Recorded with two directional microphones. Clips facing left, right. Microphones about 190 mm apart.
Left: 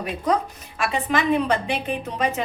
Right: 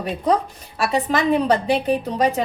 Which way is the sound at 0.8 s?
35° right (ahead or behind).